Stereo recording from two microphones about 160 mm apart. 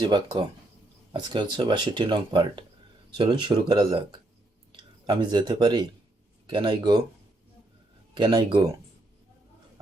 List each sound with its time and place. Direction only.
0.0 s speech: 25° right (ahead or behind)
8.1 s speech: 30° right (ahead or behind)